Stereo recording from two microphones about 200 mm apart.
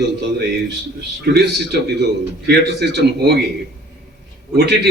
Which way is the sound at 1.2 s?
55° right (ahead or behind).